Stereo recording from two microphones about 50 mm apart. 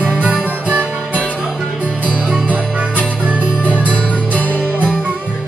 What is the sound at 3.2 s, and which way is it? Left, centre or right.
Music, right.